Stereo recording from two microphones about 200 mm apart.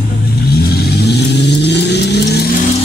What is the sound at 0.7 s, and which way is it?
Vehicle, 55° left (ahead or behind).